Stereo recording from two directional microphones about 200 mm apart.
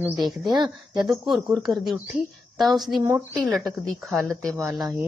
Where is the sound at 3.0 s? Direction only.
10° right (ahead or behind).